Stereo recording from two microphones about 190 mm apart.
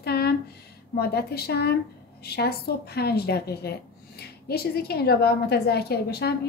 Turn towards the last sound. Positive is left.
turn(degrees=55)  # may be behind; listen again after turning